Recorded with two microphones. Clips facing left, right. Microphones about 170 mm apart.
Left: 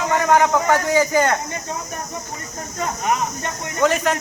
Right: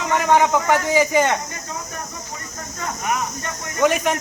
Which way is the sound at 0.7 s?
20° right (ahead or behind).